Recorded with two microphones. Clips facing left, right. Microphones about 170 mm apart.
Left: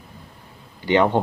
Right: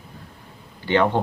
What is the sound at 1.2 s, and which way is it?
Speech, 15° left (ahead or behind).